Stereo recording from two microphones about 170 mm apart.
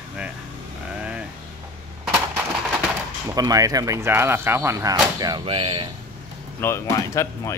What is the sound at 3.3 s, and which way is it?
Speech, 20° right (ahead or behind).